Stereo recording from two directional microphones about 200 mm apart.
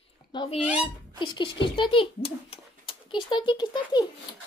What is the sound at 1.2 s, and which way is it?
A child's voice, 25° left (ahead or behind).